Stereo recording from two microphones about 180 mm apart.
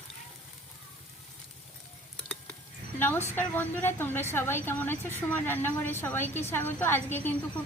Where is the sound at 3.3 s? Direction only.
10° left (ahead or behind).